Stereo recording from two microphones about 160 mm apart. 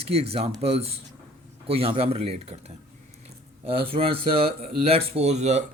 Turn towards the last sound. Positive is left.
turn(degrees=-45)  # may be behind; listen again after turning